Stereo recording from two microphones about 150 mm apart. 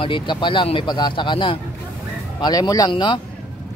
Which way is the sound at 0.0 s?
35° left (ahead or behind).